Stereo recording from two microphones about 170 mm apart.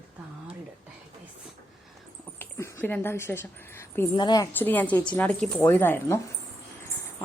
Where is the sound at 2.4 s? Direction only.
15° left (ahead or behind).